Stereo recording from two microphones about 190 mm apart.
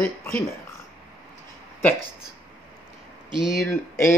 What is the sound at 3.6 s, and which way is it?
Speech, 15° left (ahead or behind).